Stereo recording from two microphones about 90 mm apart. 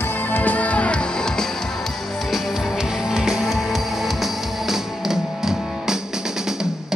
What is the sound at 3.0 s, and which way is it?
Music, 5° right (ahead or behind).